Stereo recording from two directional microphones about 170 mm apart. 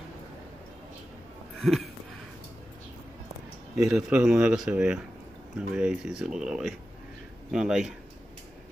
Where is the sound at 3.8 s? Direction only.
5° right (ahead or behind).